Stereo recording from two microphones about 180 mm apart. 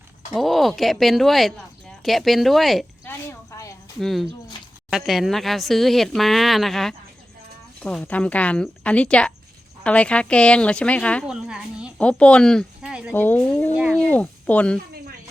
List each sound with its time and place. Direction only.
0.3 s a woman's voice: centre (ahead or behind)
3.0 s a sound: 15° left (ahead or behind)
4.0 s a woman's voice: centre (ahead or behind)
11.3 s a woman's voice: 5° right (ahead or behind)
11.9 s speech: 5° left (ahead or behind)
13.1 s speech: 10° left (ahead or behind)
13.8 s a sound: 5° left (ahead or behind)